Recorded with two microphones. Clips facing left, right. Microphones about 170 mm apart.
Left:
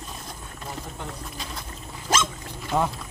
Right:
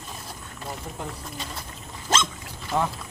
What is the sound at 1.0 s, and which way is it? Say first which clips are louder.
Bird: right 1 dB; 5° right (ahead or behind).